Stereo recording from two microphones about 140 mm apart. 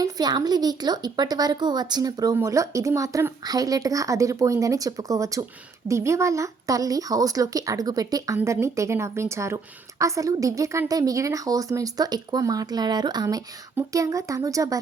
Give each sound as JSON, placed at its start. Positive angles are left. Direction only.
{"t": 0.0, "sound": "a woman's voice", "side_deg": -30}
{"t": 8.4, "sound": "a woman's voice", "side_deg": -15}